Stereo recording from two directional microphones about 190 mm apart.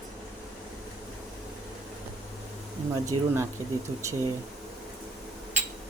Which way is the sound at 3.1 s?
25° right (ahead or behind).